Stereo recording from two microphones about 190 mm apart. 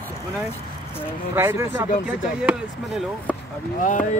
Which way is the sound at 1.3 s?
10° right (ahead or behind).